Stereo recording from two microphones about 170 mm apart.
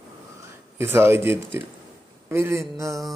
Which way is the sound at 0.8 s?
15° right (ahead or behind).